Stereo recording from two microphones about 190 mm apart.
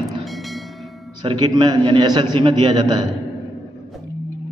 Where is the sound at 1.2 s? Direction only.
20° right (ahead or behind).